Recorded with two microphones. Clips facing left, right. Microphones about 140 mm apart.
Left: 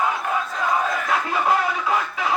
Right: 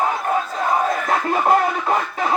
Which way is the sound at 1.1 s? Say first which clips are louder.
Right 4 dB; 45° right (ahead or behind).